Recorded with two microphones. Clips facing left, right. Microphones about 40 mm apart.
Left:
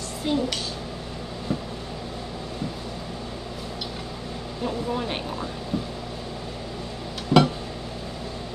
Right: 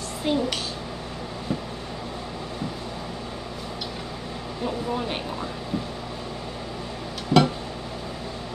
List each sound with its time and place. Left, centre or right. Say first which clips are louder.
0.3 s speech: right 1 dB; centre
4.6 s speech: even; centre
7.3 s a sound: left 1 dB; centre